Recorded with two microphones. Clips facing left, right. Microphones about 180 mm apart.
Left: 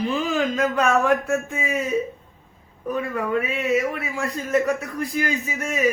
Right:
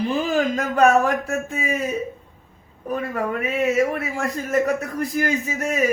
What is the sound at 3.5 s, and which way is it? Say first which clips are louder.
A man's voice: right 3 dB; 45° right (ahead or behind).